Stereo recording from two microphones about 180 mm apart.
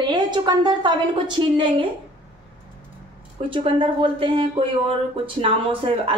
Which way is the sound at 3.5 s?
30° right (ahead or behind).